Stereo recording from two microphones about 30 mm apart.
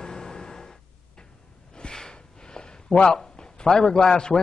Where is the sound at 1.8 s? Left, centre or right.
Left.